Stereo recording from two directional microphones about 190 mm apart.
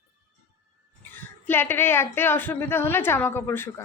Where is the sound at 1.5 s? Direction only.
10° left (ahead or behind).